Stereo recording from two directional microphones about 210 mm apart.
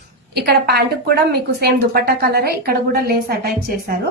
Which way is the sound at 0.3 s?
50° right (ahead or behind).